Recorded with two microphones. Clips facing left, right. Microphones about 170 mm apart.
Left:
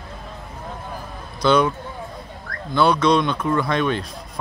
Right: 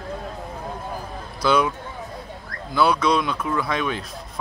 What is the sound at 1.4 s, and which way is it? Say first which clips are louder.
Speech: left 3 dB; 5° right (ahead or behind).